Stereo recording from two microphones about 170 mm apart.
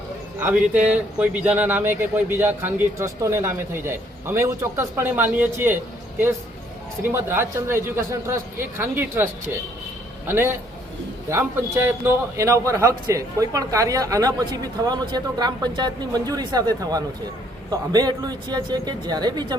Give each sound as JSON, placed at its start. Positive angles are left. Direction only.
{"t": 0.3, "sound": "a man's voice", "side_deg": -10}